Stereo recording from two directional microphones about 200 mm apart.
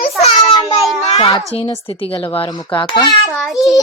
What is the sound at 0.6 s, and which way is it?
Speech, centre (ahead or behind).